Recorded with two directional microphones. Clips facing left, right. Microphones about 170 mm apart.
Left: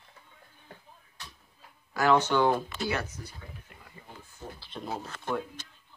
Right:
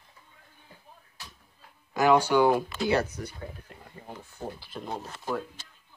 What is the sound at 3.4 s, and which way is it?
Speech, 40° right (ahead or behind).